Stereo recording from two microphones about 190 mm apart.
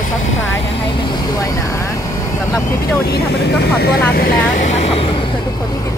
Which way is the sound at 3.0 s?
55° left (ahead or behind).